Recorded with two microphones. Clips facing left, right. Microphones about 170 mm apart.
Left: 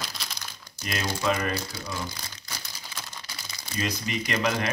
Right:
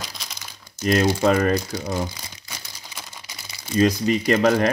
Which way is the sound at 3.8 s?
45° right (ahead or behind).